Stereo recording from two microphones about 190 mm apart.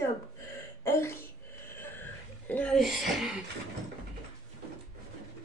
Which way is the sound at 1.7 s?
10° left (ahead or behind).